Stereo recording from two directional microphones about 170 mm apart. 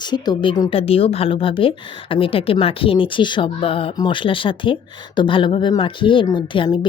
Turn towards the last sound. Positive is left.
turn(degrees=30)  # may be behind; listen again after turning